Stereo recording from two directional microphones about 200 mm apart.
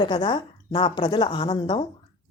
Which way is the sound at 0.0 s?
20° left (ahead or behind).